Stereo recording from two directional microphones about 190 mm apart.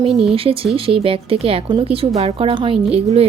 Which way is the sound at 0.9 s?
30° right (ahead or behind).